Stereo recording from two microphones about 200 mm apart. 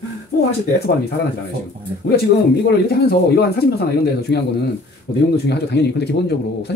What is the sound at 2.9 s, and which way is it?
Speech, 50° left (ahead or behind).